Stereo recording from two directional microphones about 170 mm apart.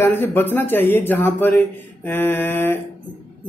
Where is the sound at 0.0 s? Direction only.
10° left (ahead or behind).